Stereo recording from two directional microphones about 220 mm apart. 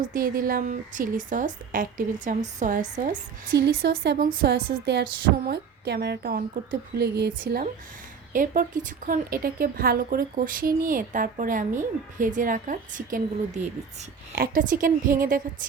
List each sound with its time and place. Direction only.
0.0 s a woman's voice: 40° right (ahead or behind)